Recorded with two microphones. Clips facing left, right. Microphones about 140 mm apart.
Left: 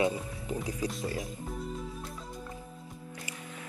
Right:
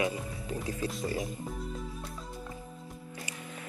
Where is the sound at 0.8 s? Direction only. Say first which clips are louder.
Right 3 dB; centre (ahead or behind).